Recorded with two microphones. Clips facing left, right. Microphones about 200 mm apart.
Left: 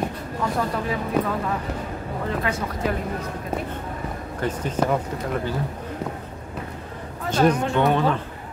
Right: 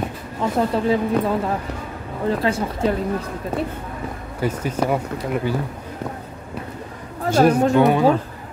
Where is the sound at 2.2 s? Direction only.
30° right (ahead or behind).